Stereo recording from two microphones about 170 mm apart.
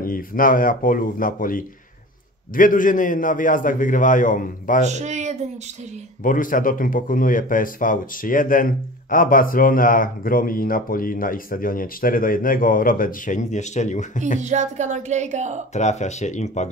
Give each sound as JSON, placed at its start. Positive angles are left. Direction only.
{"t": 0.0, "sound": "a man's voice", "side_deg": 55}
{"t": 4.8, "sound": "speech", "side_deg": -45}
{"t": 6.2, "sound": "speech", "side_deg": 50}
{"t": 14.4, "sound": "speech", "side_deg": -45}
{"t": 15.7, "sound": "a man's voice", "side_deg": 40}